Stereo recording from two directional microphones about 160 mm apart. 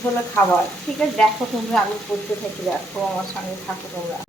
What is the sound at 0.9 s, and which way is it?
Speech, 5° left (ahead or behind).